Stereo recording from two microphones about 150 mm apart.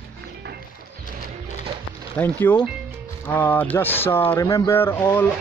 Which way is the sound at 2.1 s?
10° left (ahead or behind).